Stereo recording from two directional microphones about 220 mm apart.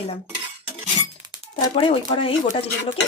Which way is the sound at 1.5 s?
25° left (ahead or behind).